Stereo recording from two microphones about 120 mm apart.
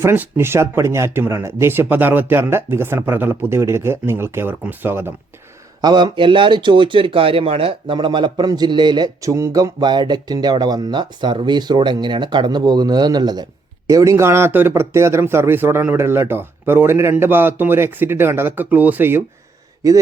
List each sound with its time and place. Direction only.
0.0 s speech: 20° right (ahead or behind)
5.8 s speech: 40° right (ahead or behind); by 19.2 s 15° right (ahead or behind)